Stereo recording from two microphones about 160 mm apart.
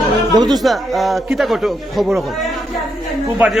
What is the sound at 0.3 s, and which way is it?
Speech, 25° right (ahead or behind).